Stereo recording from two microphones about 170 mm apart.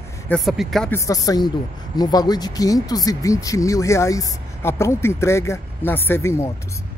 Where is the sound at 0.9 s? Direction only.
20° left (ahead or behind).